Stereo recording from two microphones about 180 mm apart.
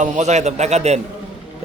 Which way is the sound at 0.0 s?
40° right (ahead or behind).